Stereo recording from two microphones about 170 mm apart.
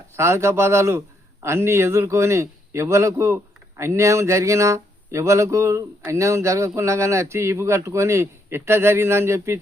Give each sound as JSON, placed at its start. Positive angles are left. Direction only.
{"t": 0.2, "sound": "a man's voice", "side_deg": -15}